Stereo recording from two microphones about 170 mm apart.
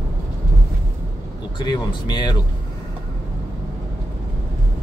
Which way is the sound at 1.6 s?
25° left (ahead or behind).